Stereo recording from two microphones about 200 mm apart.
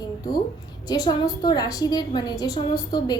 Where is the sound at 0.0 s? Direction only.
20° left (ahead or behind).